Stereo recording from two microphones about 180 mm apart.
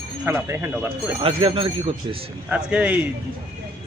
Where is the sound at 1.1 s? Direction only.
30° right (ahead or behind).